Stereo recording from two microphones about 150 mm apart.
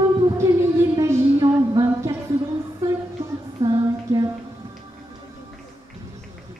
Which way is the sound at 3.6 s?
25° right (ahead or behind).